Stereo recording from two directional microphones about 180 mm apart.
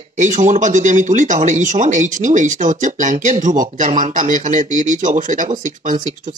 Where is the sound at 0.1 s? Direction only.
45° right (ahead or behind).